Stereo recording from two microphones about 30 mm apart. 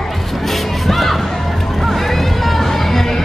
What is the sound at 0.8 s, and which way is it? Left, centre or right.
Music, centre.